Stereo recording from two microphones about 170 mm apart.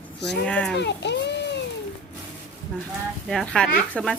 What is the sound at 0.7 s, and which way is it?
Speech, 90° left.